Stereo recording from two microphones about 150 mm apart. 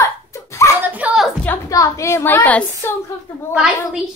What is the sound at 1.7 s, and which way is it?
A woman's voice, 20° left (ahead or behind).